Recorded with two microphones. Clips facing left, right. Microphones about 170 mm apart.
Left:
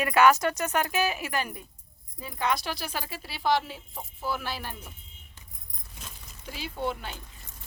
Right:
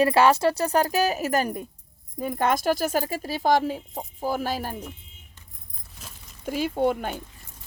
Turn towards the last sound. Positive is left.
turn(degrees=-50)  # may be behind; listen again after turning